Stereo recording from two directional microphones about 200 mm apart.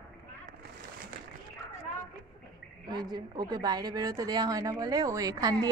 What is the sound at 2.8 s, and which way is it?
A woman's voice, 20° right (ahead or behind).